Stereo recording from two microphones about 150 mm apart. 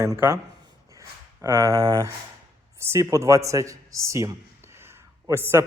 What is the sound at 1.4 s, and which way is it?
A man's voice, 20° right (ahead or behind).